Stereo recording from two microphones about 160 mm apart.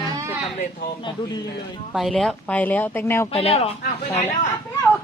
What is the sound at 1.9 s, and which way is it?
A woman's voice, centre (ahead or behind).